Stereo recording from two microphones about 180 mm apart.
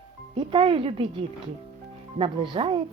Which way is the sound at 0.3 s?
25° right (ahead or behind).